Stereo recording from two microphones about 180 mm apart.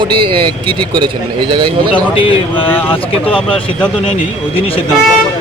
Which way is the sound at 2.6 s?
10° left (ahead or behind).